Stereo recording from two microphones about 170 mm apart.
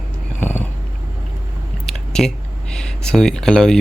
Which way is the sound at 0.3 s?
10° left (ahead or behind).